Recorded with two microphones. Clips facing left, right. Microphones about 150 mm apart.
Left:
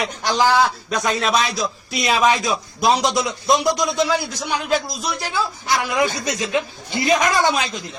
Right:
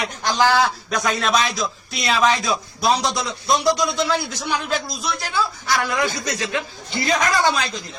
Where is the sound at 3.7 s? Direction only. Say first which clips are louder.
Left 1 dB; 15° left (ahead or behind).